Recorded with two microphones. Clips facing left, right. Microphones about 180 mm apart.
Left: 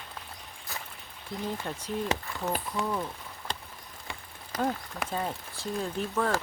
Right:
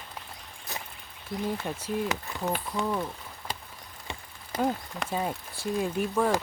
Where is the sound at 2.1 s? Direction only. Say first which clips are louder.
Left 2 dB; 30° left (ahead or behind).